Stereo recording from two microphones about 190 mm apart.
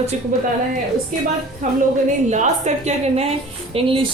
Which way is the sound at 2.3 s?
40° right (ahead or behind).